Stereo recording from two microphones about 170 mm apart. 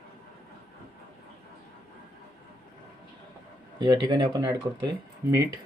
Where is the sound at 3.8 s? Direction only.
25° right (ahead or behind).